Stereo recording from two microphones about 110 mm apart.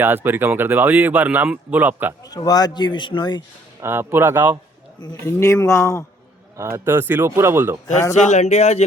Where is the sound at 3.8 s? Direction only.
20° right (ahead or behind).